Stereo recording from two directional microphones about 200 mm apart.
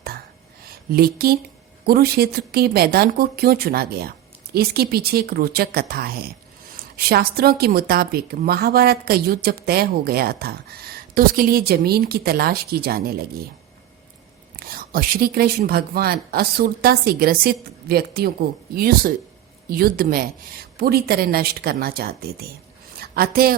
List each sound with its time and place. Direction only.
0.6 s a sound: 50° right (ahead or behind)
1.8 s a woman's voice: 50° right (ahead or behind)
14.5 s a woman's voice: 50° right (ahead or behind)